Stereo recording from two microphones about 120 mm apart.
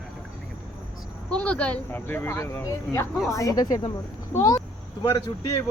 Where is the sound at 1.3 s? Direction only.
10° left (ahead or behind).